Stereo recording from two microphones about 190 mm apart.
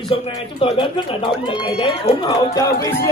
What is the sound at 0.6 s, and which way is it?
Speech, 25° left (ahead or behind).